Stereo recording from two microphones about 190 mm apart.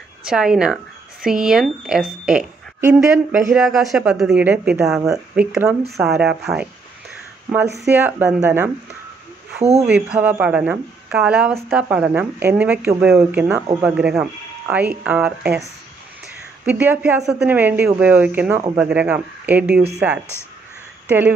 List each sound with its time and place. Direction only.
0.2 s a woman's voice: 5° right (ahead or behind)
9.6 s speech: 35° right (ahead or behind)
9.8 s a woman's voice: 5° right (ahead or behind)
16.6 s speech: 10° right (ahead or behind)